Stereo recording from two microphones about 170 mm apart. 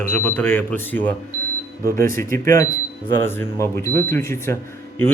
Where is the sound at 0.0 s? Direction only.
10° left (ahead or behind).